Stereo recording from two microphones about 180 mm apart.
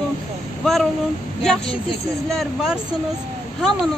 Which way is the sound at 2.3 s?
Centre (ahead or behind).